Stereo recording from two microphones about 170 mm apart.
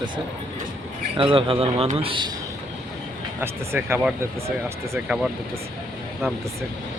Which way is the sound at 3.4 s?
10° right (ahead or behind).